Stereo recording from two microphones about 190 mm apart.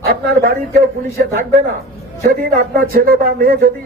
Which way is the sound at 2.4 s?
50° right (ahead or behind).